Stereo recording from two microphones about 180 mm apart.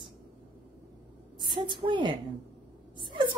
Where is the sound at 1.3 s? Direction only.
25° right (ahead or behind).